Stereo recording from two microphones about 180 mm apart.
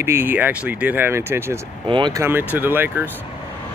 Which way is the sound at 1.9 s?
25° right (ahead or behind).